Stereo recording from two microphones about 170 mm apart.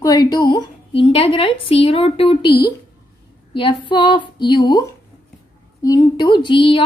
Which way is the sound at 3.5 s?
30° left (ahead or behind).